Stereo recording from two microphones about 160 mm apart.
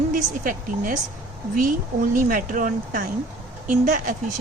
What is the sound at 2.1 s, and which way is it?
Speech, 60° right (ahead or behind).